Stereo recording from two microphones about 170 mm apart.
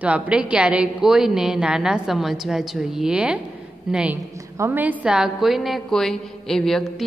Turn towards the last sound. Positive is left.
turn(degrees=5)  # may be behind; listen again after turning